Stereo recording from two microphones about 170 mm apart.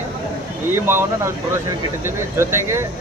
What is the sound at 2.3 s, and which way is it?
Speech, 15° right (ahead or behind).